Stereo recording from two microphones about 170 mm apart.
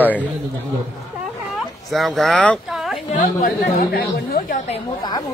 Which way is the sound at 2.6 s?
5° right (ahead or behind).